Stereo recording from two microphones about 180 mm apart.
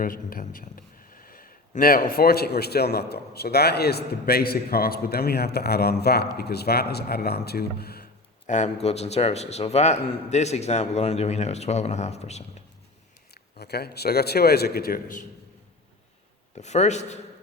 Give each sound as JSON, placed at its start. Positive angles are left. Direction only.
{"t": 0.0, "sound": "a man's voice", "side_deg": 50}
{"t": 8.4, "sound": "a man's voice", "side_deg": 40}
{"t": 13.3, "sound": "a man's voice", "side_deg": 65}
{"t": 16.6, "sound": "a man's voice", "side_deg": 40}